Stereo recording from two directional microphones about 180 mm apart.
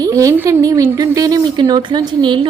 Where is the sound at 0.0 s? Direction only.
20° right (ahead or behind).